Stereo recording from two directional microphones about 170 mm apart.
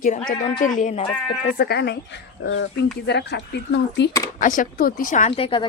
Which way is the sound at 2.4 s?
90° left.